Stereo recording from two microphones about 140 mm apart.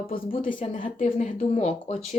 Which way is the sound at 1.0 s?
55° left (ahead or behind).